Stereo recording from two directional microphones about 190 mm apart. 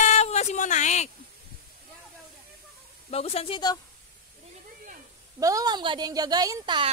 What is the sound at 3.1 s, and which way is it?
Speech, 30° left (ahead or behind).